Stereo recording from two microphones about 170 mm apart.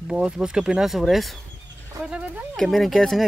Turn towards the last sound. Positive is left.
turn(degrees=0)  # may be behind; listen again after turning